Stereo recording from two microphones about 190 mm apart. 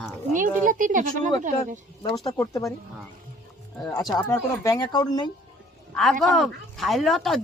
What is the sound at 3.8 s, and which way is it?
Speech, 20° left (ahead or behind).